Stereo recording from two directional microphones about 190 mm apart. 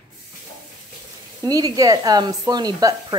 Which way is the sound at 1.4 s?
20° right (ahead or behind).